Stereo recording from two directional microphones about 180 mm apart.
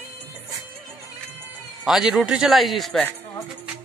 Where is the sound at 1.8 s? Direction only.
5° right (ahead or behind).